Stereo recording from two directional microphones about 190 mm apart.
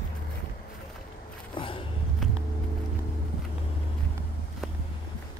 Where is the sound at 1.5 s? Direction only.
25° left (ahead or behind).